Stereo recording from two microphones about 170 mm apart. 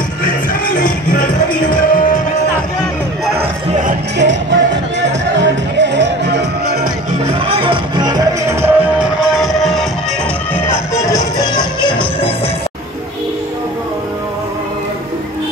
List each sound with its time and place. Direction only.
0.7 s music: 50° left (ahead or behind)
4.2 s music: 90° right; by 6.9 s 70° right (ahead or behind)
7.2 s music: 35° right (ahead or behind); by 9.8 s centre (ahead or behind)
11.1 s music: 20° left (ahead or behind)